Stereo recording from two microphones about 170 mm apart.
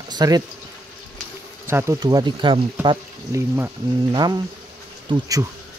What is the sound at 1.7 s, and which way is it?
Speech, 15° right (ahead or behind).